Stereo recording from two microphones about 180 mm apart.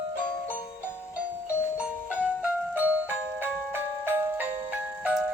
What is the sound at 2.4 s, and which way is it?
Music, 10° right (ahead or behind).